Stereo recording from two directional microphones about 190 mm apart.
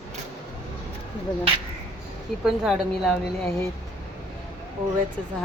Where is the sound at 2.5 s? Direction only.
Centre (ahead or behind).